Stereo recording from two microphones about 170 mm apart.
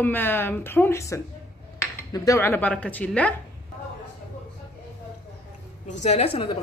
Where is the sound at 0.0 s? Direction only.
10° left (ahead or behind).